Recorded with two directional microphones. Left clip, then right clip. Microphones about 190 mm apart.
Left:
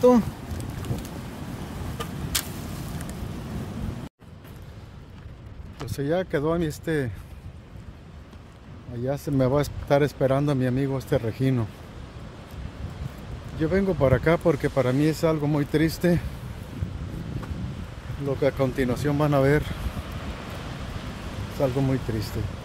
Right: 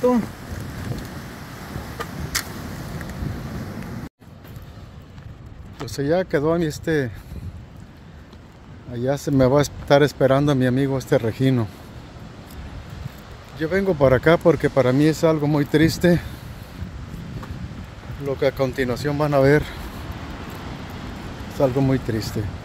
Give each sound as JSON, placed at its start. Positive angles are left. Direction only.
{"t": 5.8, "sound": "speech", "side_deg": -25}
{"t": 8.9, "sound": "speech", "side_deg": -30}
{"t": 13.6, "sound": "speech", "side_deg": -30}
{"t": 18.4, "sound": "speech", "side_deg": -30}
{"t": 21.5, "sound": "speech", "side_deg": -30}